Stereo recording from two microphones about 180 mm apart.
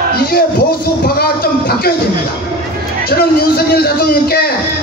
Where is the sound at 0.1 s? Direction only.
60° left (ahead or behind).